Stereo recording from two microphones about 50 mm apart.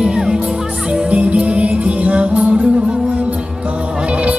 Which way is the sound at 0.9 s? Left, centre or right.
Right.